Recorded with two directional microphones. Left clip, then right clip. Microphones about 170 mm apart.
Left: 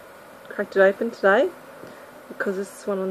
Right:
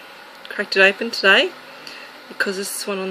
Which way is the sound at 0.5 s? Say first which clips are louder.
Right 3 dB; 20° right (ahead or behind).